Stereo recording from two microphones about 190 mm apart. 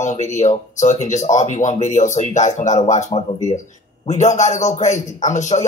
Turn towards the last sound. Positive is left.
turn(degrees=40)  # may be behind; listen again after turning